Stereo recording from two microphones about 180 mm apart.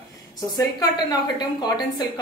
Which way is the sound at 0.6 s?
20° left (ahead or behind).